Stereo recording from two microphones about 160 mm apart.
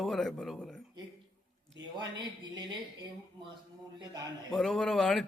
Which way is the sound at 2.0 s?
25° right (ahead or behind).